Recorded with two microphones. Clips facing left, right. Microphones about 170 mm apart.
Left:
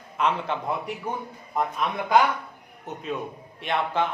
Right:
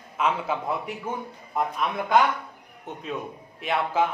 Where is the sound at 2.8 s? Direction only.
Centre (ahead or behind).